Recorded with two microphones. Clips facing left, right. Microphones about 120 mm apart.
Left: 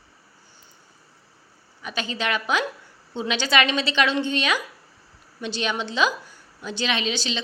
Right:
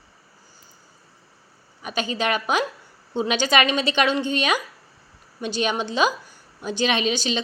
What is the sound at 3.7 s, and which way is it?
A woman's voice, 45° right (ahead or behind).